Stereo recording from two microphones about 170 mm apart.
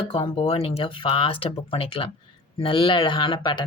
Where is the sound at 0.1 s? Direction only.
35° left (ahead or behind).